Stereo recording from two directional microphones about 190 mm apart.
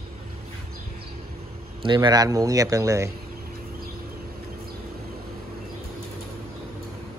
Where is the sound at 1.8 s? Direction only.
25° right (ahead or behind).